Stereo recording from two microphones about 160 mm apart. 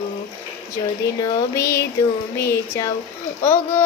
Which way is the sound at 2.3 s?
20° left (ahead or behind).